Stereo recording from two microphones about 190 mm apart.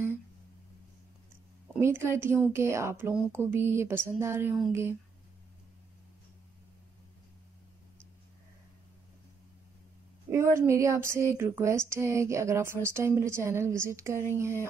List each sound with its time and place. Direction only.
1.7 s speech: 10° right (ahead or behind)
10.3 s speech: 15° right (ahead or behind)